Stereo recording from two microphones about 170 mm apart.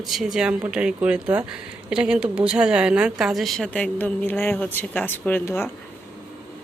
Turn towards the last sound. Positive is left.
turn(degrees=15)  # may be behind; listen again after turning